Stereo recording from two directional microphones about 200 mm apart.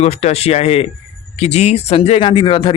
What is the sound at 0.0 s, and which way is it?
Speech, 30° left (ahead or behind).